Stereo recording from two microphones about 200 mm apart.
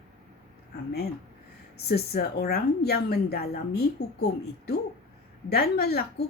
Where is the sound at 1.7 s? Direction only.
50° left (ahead or behind).